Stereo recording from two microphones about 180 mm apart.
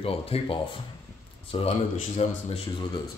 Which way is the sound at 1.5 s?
30° left (ahead or behind).